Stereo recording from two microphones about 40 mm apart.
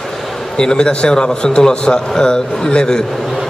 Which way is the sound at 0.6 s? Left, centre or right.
Left.